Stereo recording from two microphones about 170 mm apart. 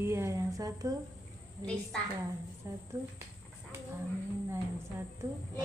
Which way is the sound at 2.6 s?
15° right (ahead or behind).